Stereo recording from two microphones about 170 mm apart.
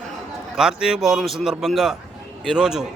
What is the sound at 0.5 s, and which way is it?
A man's voice, 5° right (ahead or behind).